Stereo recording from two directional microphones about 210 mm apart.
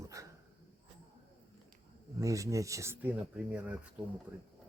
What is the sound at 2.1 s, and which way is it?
Speech, 15° right (ahead or behind).